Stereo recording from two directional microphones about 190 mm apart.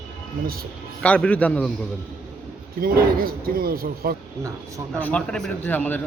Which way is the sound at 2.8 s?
50° right (ahead or behind).